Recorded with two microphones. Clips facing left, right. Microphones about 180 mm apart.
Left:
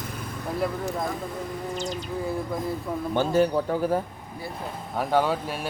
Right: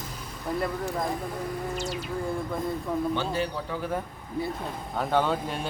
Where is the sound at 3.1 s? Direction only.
45° left (ahead or behind).